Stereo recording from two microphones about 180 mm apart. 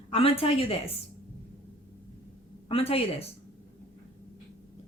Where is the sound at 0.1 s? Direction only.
35° left (ahead or behind).